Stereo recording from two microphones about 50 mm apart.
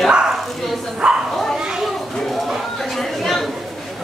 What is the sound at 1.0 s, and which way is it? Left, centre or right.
Bow-wow, centre.